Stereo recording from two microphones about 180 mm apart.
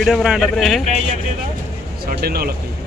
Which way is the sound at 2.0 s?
60° right (ahead or behind).